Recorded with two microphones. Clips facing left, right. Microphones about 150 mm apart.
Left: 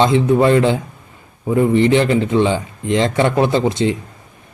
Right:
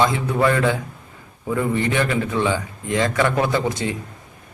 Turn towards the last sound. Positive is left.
turn(degrees=25)  # may be behind; listen again after turning